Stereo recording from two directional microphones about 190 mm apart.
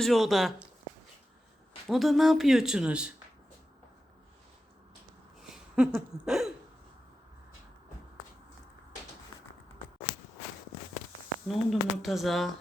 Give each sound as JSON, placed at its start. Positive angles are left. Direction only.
{"t": 0.0, "sound": "speech", "side_deg": 0}
{"t": 1.9, "sound": "speech", "side_deg": 0}
{"t": 5.4, "sound": "a sound", "side_deg": -5}
{"t": 11.4, "sound": "speech", "side_deg": 0}